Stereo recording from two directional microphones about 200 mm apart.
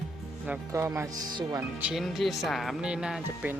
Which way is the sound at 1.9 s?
Centre (ahead or behind).